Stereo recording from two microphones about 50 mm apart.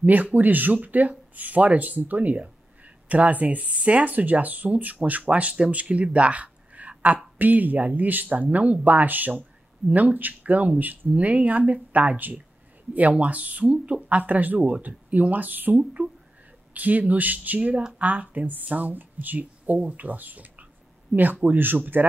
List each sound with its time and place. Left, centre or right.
0.0 s speech: right
6.1 s a sound: right
7.3 s speech: right
15.8 s speech: right
16.7 s speech: right